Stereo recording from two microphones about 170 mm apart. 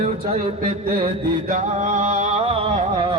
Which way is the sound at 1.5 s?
45° right (ahead or behind).